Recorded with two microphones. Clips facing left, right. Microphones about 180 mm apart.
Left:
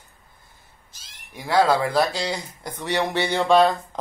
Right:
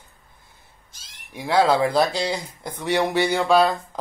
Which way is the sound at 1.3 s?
15° right (ahead or behind).